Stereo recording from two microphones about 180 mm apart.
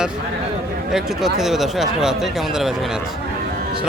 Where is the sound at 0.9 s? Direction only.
Centre (ahead or behind).